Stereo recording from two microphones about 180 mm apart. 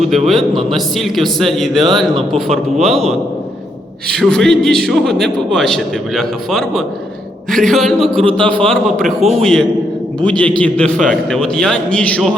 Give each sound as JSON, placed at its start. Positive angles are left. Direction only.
{"t": 0.1, "sound": "a man's voice", "side_deg": 0}
{"t": 4.1, "sound": "a man's voice", "side_deg": 5}
{"t": 8.1, "sound": "a man's voice", "side_deg": -30}
{"t": 8.5, "sound": "a man's voice", "side_deg": 5}